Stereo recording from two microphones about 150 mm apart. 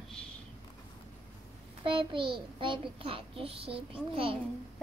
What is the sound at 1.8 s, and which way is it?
A child's voice, 35° right (ahead or behind).